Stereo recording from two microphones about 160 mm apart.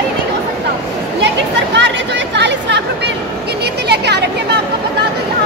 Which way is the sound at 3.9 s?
90° right.